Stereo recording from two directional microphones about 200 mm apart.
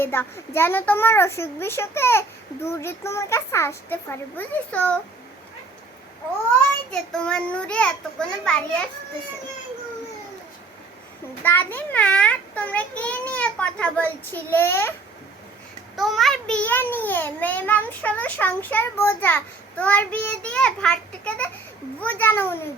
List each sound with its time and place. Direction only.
0.0 s a child's voice: 10° left (ahead or behind)
6.6 s child singing: 5° left (ahead or behind)
11.4 s a child's voice: 10° left (ahead or behind)
16.0 s a child's voice: centre (ahead or behind)